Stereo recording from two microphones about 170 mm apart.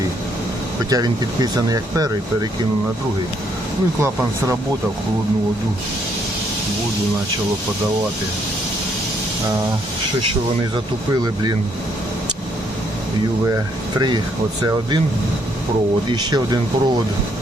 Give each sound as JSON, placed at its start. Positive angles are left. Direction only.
{"t": 0.9, "sound": "speech", "side_deg": -20}
{"t": 14.6, "sound": "speech", "side_deg": -25}
{"t": 16.0, "sound": "speech", "side_deg": -25}